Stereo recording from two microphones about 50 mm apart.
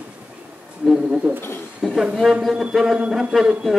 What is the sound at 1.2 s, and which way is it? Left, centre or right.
Speech, centre.